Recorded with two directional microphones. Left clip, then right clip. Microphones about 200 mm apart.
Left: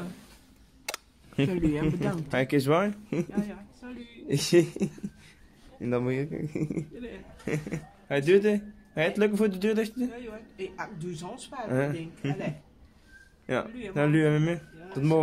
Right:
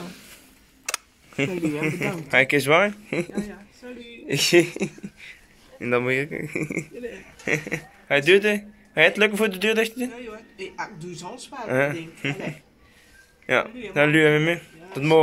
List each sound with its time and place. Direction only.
0.8 s camera: 15° left (ahead or behind)
1.8 s a man's voice: 15° left (ahead or behind)
11.0 s a woman's voice: 25° left (ahead or behind)
11.6 s a man's voice: centre (ahead or behind)
13.5 s a man's voice: centre (ahead or behind)